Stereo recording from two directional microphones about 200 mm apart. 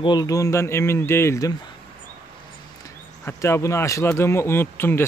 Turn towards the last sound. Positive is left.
turn(degrees=10)  # may be behind; listen again after turning